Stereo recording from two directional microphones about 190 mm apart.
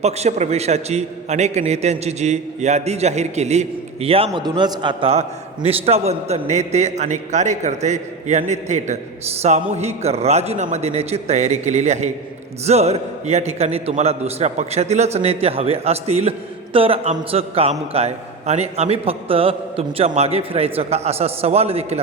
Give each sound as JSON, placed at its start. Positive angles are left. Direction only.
{"t": 0.0, "sound": "a man's voice", "side_deg": -35}